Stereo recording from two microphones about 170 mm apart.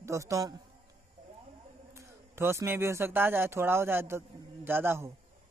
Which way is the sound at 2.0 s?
15° right (ahead or behind).